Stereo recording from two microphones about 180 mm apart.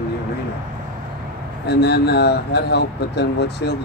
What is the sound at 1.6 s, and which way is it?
Speech, 65° left (ahead or behind).